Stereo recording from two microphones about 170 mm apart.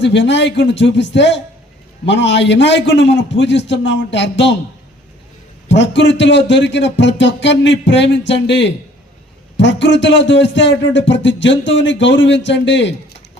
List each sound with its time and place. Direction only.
0.0 s a man's voice: 90° left
5.6 s a man's voice: 90° left